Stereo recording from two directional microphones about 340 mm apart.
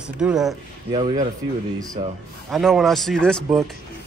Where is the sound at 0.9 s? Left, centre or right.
Centre.